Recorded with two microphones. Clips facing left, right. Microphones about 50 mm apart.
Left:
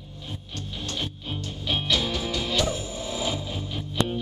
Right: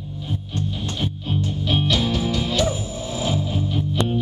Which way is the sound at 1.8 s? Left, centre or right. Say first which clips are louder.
Right 3 dB; centre.